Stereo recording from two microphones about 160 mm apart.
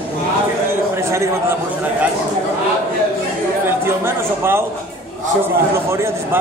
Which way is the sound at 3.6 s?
15° right (ahead or behind).